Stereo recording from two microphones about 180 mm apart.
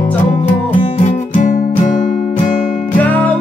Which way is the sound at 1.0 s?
45° left (ahead or behind).